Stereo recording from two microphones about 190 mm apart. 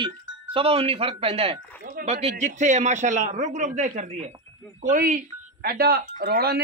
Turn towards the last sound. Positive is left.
turn(degrees=-55)  # may be behind; listen again after turning